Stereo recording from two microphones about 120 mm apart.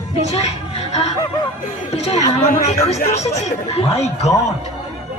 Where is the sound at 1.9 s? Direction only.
65° left (ahead or behind).